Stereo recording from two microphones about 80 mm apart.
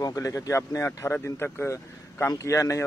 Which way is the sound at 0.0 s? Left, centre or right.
Left.